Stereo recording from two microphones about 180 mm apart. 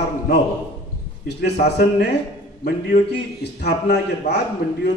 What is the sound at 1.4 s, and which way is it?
A man's voice, 70° left (ahead or behind).